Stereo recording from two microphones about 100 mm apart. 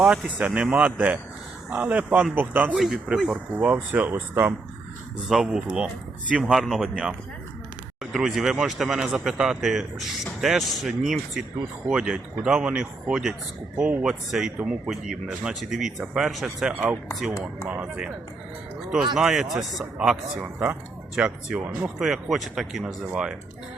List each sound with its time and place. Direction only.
0.0 s speech: 10° right (ahead or behind)
2.7 s speech: 5° right (ahead or behind)
3.5 s speech: 15° right (ahead or behind)
5.3 s speech: 5° right (ahead or behind)
16.7 s speech: 15° right (ahead or behind)
19.1 s speech: 5° right (ahead or behind)